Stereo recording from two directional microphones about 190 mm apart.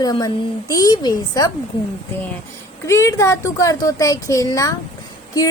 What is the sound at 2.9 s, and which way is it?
Speech, 15° left (ahead or behind).